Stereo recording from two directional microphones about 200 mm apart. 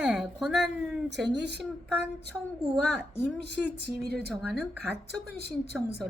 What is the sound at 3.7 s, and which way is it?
Speech, 55° right (ahead or behind).